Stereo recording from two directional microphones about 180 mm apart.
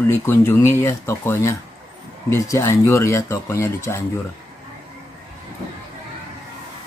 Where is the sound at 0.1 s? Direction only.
10° left (ahead or behind).